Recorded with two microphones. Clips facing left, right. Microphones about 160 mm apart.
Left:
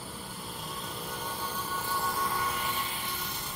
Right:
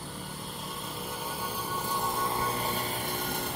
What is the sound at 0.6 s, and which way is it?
Music, centre (ahead or behind).